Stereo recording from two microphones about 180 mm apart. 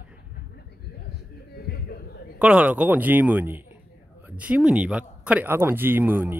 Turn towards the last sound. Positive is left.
turn(degrees=-10)  # may be behind; listen again after turning